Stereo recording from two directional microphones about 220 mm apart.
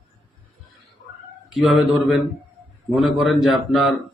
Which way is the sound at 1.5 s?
Centre (ahead or behind).